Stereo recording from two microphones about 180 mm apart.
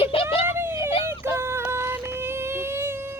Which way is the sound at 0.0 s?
30° left (ahead or behind).